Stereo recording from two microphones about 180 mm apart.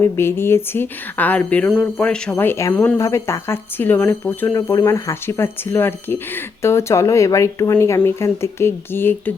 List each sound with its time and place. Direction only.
0.0 s speech: 15° left (ahead or behind)